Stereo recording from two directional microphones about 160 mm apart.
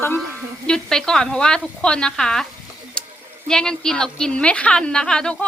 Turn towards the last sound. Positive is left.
turn(degrees=5)  # may be behind; listen again after turning